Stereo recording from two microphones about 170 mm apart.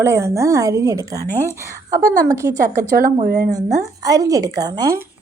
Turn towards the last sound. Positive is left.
turn(degrees=-20)  # may be behind; listen again after turning